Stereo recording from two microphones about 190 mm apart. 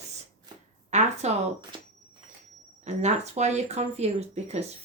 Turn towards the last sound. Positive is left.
turn(degrees=-35)  # may be behind; listen again after turning